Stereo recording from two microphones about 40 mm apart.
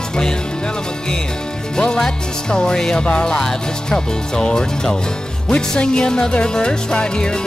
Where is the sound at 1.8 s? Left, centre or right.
Centre.